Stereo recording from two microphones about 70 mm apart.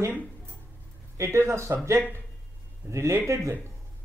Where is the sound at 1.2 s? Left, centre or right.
Right.